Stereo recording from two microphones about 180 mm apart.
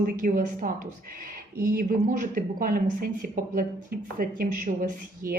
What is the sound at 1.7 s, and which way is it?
A man's voice, 50° right (ahead or behind).